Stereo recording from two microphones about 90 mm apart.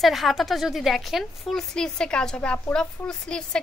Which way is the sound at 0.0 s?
Centre (ahead or behind).